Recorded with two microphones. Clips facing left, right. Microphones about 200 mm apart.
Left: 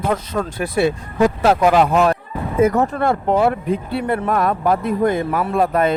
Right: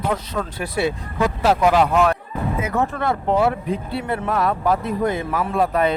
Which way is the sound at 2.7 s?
40° left (ahead or behind).